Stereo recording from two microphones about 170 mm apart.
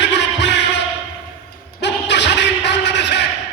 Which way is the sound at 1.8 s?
90° left.